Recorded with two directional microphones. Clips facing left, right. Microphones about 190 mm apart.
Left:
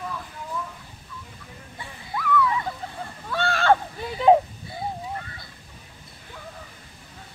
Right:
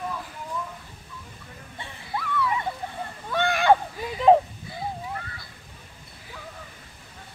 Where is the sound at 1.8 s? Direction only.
30° right (ahead or behind).